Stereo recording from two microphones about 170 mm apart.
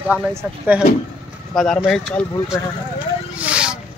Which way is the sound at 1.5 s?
Centre (ahead or behind).